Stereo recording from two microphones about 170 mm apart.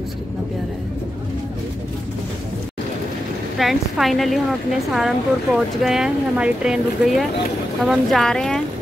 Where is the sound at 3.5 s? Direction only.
Centre (ahead or behind).